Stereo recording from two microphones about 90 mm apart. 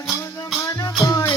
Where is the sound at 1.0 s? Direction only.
45° left (ahead or behind).